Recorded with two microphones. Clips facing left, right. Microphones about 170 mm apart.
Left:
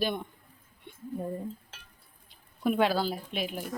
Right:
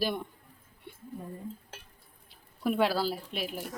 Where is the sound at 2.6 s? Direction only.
Centre (ahead or behind).